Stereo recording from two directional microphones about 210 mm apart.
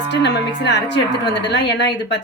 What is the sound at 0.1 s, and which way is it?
Speech, 55° left (ahead or behind).